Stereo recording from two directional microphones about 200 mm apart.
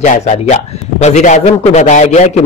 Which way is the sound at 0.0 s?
35° left (ahead or behind).